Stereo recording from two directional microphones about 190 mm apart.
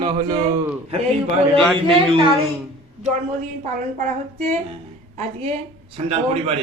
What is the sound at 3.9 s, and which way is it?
Speech, 40° right (ahead or behind).